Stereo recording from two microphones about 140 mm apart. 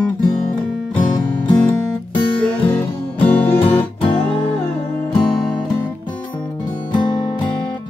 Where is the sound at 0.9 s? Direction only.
30° left (ahead or behind).